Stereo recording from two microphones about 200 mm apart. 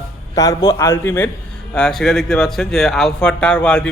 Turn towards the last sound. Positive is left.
turn(degrees=5)  # may be behind; listen again after turning